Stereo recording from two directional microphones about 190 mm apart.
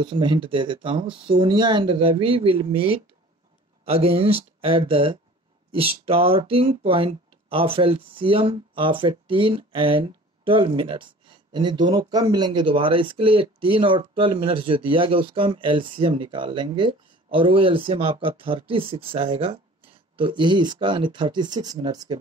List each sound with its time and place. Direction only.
0.0 s speech: 25° right (ahead or behind)